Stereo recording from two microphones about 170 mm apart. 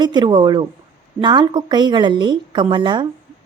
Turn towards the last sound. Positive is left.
turn(degrees=-25)  # may be behind; listen again after turning